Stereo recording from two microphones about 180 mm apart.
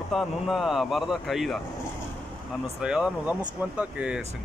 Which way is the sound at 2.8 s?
5° right (ahead or behind).